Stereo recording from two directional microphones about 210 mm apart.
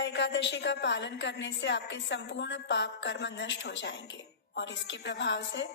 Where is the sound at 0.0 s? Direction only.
55° left (ahead or behind).